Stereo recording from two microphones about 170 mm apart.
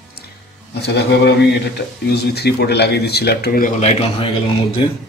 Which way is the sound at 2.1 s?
75° left (ahead or behind).